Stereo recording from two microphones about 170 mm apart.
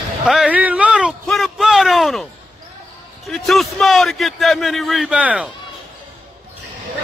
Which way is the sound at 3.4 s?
Centre (ahead or behind).